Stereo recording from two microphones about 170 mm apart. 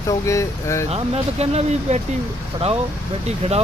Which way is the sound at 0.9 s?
35° right (ahead or behind).